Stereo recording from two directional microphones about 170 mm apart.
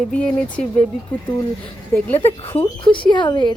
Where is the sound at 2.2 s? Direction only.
30° left (ahead or behind).